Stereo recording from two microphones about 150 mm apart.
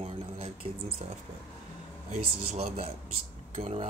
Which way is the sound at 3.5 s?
45° right (ahead or behind).